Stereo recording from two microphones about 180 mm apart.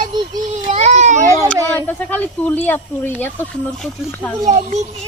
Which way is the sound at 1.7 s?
10° left (ahead or behind).